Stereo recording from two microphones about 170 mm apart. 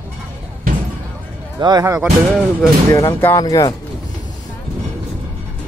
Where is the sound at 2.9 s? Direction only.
15° left (ahead or behind).